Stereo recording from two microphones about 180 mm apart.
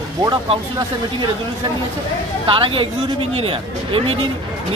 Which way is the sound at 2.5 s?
30° right (ahead or behind).